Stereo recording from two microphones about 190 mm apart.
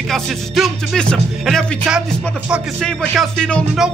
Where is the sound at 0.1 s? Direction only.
5° left (ahead or behind).